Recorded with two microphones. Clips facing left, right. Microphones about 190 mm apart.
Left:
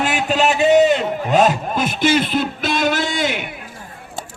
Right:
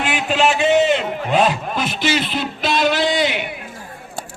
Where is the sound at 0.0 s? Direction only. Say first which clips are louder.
Left 1 dB; 40° left (ahead or behind).